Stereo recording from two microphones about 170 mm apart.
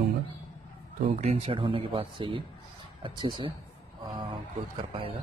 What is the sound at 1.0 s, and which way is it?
Speech, 45° right (ahead or behind).